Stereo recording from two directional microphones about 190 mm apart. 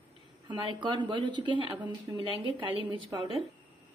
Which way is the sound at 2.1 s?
15° right (ahead or behind).